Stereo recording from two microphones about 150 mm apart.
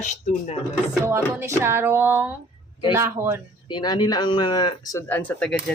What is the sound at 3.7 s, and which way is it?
Speech, 30° left (ahead or behind).